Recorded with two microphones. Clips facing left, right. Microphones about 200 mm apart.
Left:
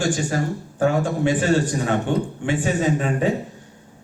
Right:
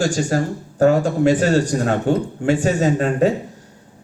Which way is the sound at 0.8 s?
40° right (ahead or behind).